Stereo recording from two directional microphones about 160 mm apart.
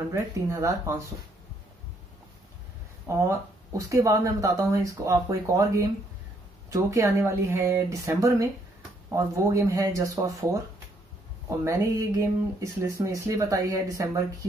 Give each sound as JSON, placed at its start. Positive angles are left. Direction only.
{"t": 0.1, "sound": "speech", "side_deg": -20}
{"t": 3.1, "sound": "speech", "side_deg": -20}
{"t": 11.4, "sound": "speech", "side_deg": -20}